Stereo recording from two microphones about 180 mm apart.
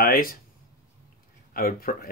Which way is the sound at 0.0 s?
55° left (ahead or behind).